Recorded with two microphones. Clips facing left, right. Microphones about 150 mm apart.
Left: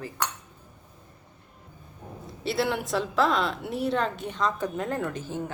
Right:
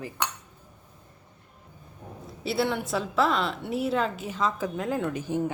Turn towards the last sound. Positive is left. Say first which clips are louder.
# right 4 dB
turn(degrees=-15)  # may be behind; listen again after turning